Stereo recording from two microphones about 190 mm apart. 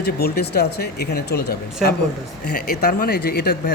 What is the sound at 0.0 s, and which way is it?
Speech, 55° left (ahead or behind).